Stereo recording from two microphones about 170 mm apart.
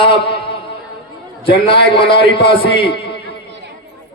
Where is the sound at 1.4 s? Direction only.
30° left (ahead or behind).